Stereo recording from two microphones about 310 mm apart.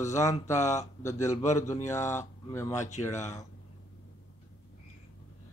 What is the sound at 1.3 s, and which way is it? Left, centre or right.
Speech, left.